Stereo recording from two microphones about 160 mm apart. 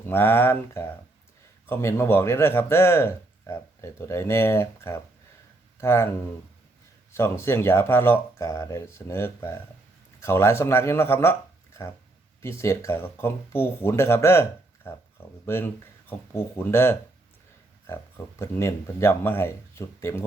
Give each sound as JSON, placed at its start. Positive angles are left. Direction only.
{"t": 0.0, "sound": "speech", "side_deg": 15}
{"t": 15.4, "sound": "speech", "side_deg": 15}